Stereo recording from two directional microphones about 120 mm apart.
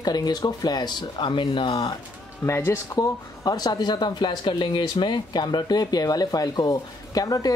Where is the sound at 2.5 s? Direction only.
20° left (ahead or behind).